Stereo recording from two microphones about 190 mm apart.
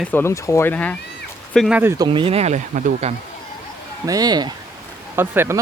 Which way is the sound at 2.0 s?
25° right (ahead or behind).